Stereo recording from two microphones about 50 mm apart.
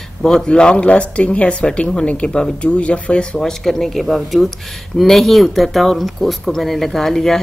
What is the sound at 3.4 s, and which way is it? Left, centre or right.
Speech, centre.